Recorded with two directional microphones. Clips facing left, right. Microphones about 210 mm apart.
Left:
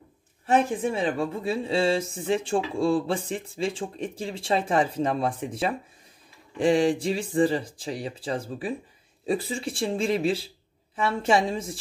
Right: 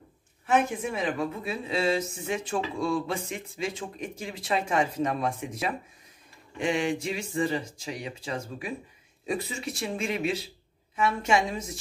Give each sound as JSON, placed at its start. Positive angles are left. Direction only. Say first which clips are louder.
{"t": 0.5, "sound": "speech", "louder": "left 3 dB", "side_deg": 35}